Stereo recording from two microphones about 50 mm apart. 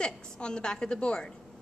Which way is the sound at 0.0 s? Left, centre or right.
Centre.